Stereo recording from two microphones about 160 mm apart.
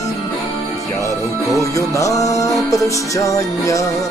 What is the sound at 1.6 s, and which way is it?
Music, 20° left (ahead or behind).